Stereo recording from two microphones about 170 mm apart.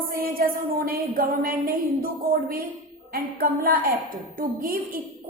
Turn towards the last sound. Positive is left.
turn(degrees=-55)  # may be behind; listen again after turning